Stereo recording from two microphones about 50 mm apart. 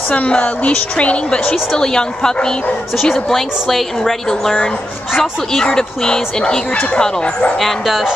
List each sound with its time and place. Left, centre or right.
0.1 s a woman's voice: left
1.5 s a woman's voice: centre
7.0 s a woman's voice: left
7.5 s speech: centre